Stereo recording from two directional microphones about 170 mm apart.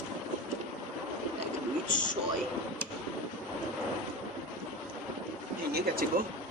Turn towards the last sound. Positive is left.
turn(degrees=-65)  # may be behind; listen again after turning